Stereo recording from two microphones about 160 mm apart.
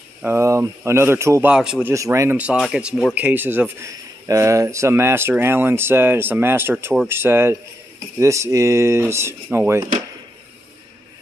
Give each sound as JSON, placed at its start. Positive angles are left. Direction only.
{"t": 0.2, "sound": "speech", "side_deg": -15}
{"t": 1.5, "sound": "speech", "side_deg": -5}
{"t": 1.9, "sound": "speech", "side_deg": -20}